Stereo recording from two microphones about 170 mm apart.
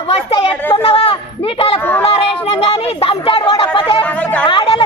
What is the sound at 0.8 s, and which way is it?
Speech, 35° left (ahead or behind).